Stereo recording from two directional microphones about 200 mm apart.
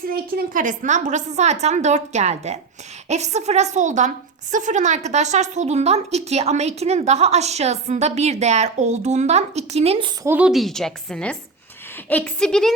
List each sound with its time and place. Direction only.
0.1 s speech: 45° right (ahead or behind); by 10.1 s 30° right (ahead or behind)
10.2 s a woman's voice: 5° right (ahead or behind)